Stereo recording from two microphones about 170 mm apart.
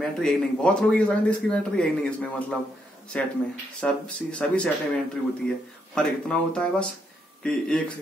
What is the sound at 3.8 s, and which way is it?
Speech, 5° left (ahead or behind).